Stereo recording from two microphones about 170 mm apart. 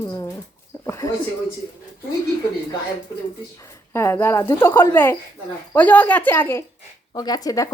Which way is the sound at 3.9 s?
15° left (ahead or behind).